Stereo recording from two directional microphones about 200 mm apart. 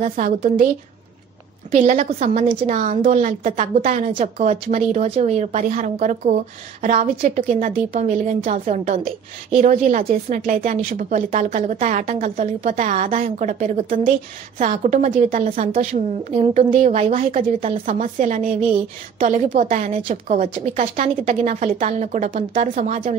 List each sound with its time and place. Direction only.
0.1 s speech: 40° right (ahead or behind)
1.8 s speech: 40° right (ahead or behind)